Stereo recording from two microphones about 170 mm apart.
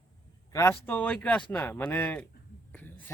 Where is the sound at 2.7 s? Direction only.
10° left (ahead or behind).